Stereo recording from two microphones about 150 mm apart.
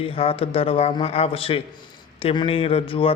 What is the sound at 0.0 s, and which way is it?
Speech, 40° left (ahead or behind).